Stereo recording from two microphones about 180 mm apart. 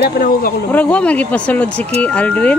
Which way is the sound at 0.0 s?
50° left (ahead or behind).